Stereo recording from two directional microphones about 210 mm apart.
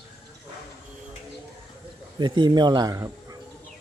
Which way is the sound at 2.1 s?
20° right (ahead or behind).